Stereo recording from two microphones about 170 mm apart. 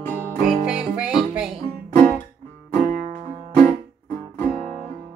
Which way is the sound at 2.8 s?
45° right (ahead or behind).